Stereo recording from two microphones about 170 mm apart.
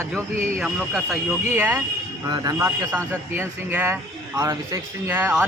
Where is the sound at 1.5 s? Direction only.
15° right (ahead or behind).